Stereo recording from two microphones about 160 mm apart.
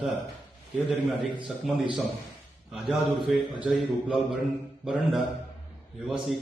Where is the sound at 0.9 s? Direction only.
Centre (ahead or behind).